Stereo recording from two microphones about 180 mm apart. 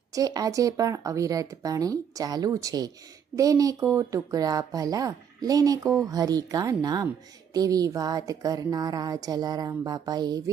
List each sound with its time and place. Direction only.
0.1 s a woman's voice: 20° right (ahead or behind)